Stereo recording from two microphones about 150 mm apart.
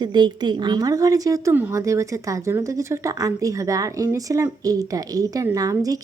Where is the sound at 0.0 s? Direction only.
30° right (ahead or behind).